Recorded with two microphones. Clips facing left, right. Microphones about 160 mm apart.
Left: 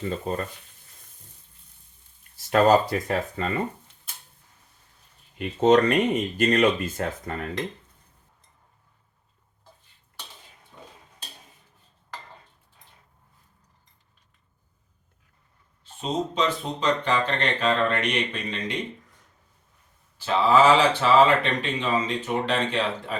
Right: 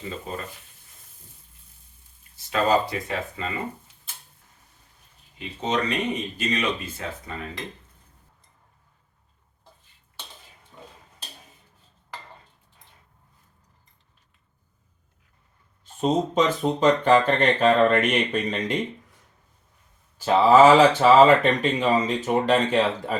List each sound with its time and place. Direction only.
0.3 s speech: 40° left (ahead or behind)
2.5 s speech: 45° left (ahead or behind)
5.4 s speech: 50° left (ahead or behind)
15.8 s speech: 45° right (ahead or behind)
20.1 s speech: 45° right (ahead or behind)